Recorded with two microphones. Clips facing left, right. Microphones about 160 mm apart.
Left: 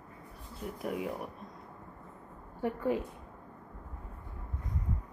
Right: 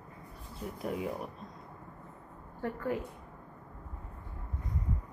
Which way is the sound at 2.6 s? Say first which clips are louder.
Left 3 dB; 20° left (ahead or behind).